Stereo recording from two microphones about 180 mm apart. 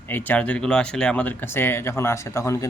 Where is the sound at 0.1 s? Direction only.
10° left (ahead or behind).